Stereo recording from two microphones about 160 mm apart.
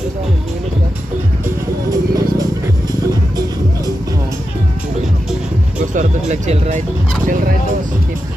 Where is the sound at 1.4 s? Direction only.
20° right (ahead or behind).